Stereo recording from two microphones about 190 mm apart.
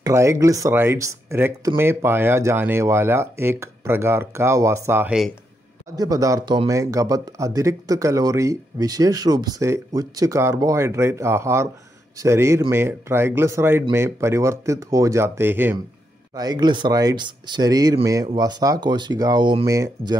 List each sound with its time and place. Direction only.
0.0 s speech: 15° right (ahead or behind)
5.9 s speech: 20° right (ahead or behind)